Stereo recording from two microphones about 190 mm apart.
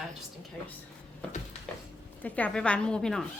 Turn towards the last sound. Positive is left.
turn(degrees=5)  # may be behind; listen again after turning